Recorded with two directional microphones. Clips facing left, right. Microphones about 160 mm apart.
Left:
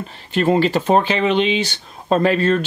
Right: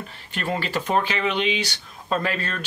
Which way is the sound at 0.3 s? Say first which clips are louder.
Left 11 dB; 25° left (ahead or behind).